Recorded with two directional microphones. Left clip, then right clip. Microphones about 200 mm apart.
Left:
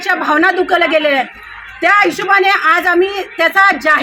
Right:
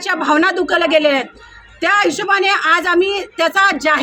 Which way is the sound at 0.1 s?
20° right (ahead or behind).